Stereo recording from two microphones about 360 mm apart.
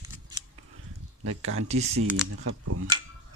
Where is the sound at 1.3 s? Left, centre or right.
Right.